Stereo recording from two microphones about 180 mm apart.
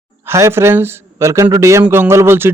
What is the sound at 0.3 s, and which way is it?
Speech, 15° right (ahead or behind).